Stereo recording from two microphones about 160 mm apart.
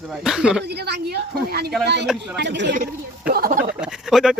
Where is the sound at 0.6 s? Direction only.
90° right; by 3.6 s 65° right (ahead or behind).